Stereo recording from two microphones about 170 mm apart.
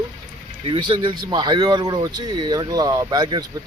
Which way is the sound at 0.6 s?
30° right (ahead or behind).